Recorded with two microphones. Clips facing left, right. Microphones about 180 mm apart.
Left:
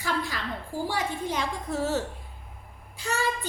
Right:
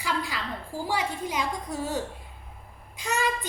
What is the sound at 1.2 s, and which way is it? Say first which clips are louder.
A child's voice: even; 15° right (ahead or behind).